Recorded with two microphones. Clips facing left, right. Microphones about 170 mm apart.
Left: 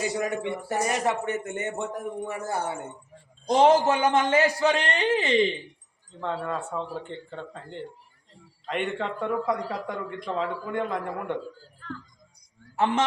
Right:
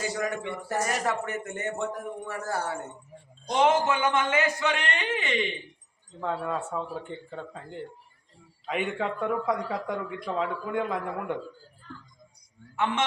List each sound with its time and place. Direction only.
0.2 s a man's voice: 20° left (ahead or behind)
3.5 s a man's voice: 35° left (ahead or behind)
6.1 s a man's voice: 5° right (ahead or behind)
12.7 s a man's voice: 35° left (ahead or behind)